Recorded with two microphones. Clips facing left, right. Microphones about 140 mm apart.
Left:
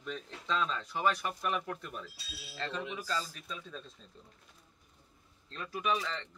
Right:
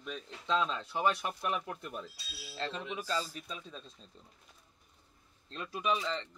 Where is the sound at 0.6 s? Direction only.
25° right (ahead or behind).